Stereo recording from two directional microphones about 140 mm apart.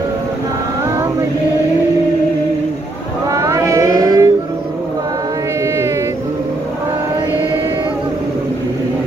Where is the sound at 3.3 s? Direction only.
20° right (ahead or behind).